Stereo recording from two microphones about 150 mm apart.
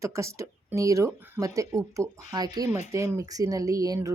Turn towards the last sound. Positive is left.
turn(degrees=-25)  # may be behind; listen again after turning